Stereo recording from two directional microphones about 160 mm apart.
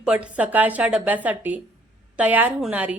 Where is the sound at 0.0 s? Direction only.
5° right (ahead or behind).